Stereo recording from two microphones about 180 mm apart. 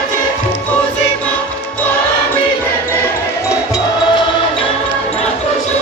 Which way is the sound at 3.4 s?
20° left (ahead or behind).